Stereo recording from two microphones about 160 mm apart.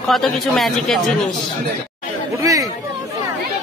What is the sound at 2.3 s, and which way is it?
Chatter, 20° right (ahead or behind).